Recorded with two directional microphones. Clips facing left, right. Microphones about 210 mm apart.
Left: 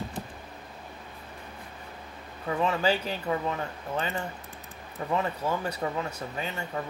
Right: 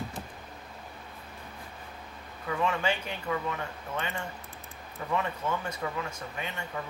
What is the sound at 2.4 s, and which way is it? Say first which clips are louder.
Speech: left 3 dB; 35° left (ahead or behind).